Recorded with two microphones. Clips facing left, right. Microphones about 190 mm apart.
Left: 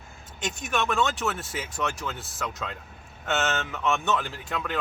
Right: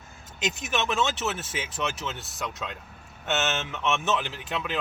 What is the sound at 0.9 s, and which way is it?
Speech, centre (ahead or behind).